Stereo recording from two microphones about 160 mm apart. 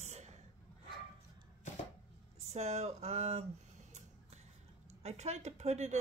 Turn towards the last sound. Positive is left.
turn(degrees=-45)  # may be behind; listen again after turning